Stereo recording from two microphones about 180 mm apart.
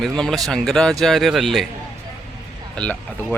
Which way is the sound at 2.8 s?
10° left (ahead or behind).